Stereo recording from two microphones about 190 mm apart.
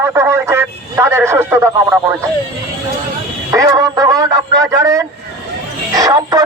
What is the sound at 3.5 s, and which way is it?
Speech, 15° right (ahead or behind).